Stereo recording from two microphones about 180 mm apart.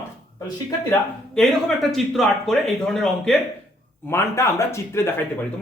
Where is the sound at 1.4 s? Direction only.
Centre (ahead or behind).